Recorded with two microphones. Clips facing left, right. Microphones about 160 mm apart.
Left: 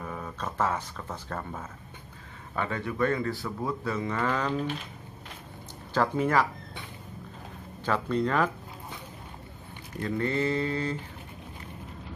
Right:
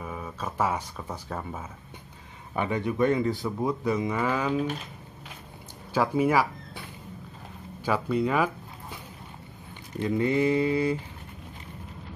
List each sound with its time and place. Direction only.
0.0 s speech: 5° right (ahead or behind)
5.9 s speech: 10° right (ahead or behind)
7.8 s speech: 10° right (ahead or behind)
9.9 s speech: 15° right (ahead or behind)